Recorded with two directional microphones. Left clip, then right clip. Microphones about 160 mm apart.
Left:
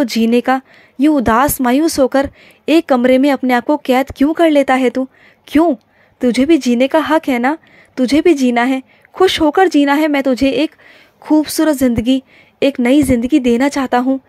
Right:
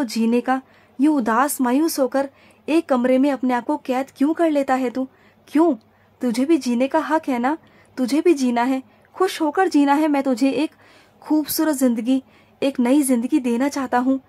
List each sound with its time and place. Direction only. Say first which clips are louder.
0.0 s speech: left 7 dB; 25° left (ahead or behind)